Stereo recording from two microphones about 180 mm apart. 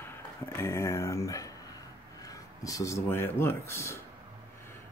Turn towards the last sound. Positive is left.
turn(degrees=15)  # may be behind; listen again after turning